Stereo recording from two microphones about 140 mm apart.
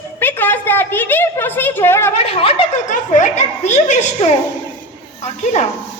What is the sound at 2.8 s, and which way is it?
Speech, 60° left (ahead or behind).